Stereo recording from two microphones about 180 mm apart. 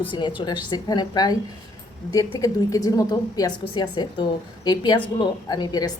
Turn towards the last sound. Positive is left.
turn(degrees=20)  # may be behind; listen again after turning